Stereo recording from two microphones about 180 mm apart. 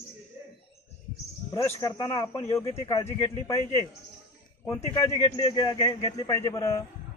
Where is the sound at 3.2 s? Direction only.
15° left (ahead or behind).